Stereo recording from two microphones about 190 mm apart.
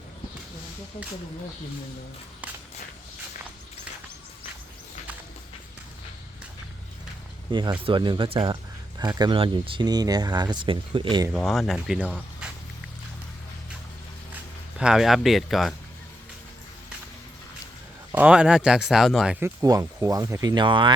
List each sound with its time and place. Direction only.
7.5 s speech: 25° right (ahead or behind)
11.3 s speech: centre (ahead or behind)
14.8 s speech: 5° right (ahead or behind)
18.1 s speech: 5° right (ahead or behind)
19.6 s speech: 20° right (ahead or behind)